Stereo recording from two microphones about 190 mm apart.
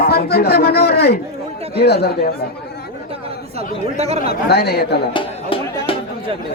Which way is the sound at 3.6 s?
35° right (ahead or behind).